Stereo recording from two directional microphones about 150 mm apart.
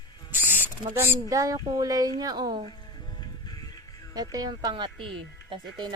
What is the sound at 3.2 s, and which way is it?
Music, 25° left (ahead or behind).